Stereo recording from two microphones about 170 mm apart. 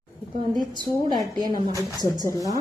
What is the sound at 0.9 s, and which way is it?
Speech, 20° left (ahead or behind).